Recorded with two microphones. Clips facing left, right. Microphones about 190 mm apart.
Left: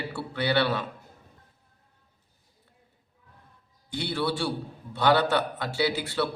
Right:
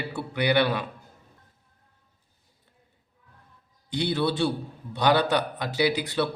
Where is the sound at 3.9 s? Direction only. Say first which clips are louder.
Right 3 dB; 20° right (ahead or behind).